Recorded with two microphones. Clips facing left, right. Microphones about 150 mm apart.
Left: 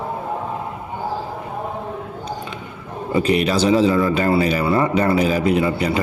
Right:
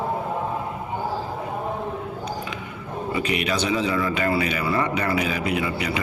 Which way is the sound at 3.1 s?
35° left (ahead or behind).